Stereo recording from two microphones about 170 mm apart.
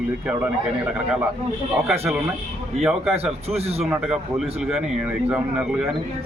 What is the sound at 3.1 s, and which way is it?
Speech, 35° right (ahead or behind).